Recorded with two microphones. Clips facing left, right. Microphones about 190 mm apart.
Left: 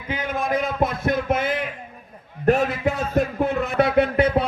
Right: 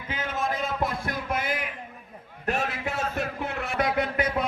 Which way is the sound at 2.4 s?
40° left (ahead or behind).